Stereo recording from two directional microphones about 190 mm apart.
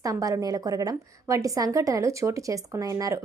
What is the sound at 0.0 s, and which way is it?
A woman's voice, 20° right (ahead or behind).